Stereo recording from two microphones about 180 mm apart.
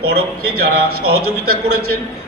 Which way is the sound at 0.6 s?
60° right (ahead or behind).